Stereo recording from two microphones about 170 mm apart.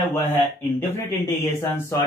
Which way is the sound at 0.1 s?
10° left (ahead or behind).